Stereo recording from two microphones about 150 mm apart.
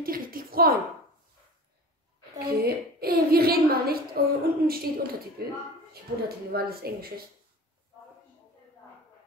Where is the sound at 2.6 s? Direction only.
90° right.